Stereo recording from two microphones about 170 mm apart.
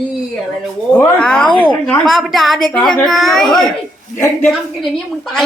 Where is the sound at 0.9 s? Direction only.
5° left (ahead or behind).